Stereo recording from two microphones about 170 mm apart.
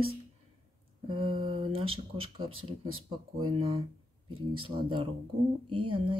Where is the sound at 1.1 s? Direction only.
30° right (ahead or behind).